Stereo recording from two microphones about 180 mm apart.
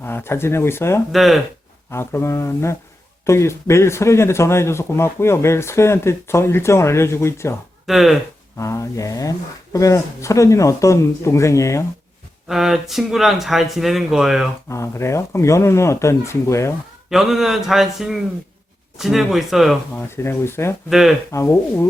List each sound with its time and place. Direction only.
0.0 s a man's voice: 10° left (ahead or behind)
1.1 s speech: centre (ahead or behind)
1.9 s a man's voice: 15° left (ahead or behind)
7.9 s speech: centre (ahead or behind)
8.5 s a man's voice: 15° left (ahead or behind)
12.5 s speech: centre (ahead or behind)
14.7 s a man's voice: 15° left (ahead or behind)
17.1 s speech: centre (ahead or behind)
19.9 s a man's voice: 10° left (ahead or behind)